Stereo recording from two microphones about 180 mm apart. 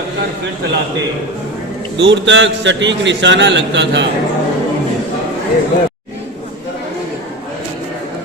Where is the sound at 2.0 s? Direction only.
90° right.